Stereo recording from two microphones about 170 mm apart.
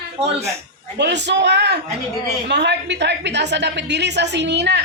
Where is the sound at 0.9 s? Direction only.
90° right.